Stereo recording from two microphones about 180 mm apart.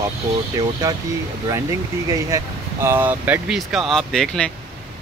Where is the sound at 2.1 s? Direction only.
15° right (ahead or behind); by 4.5 s 5° left (ahead or behind).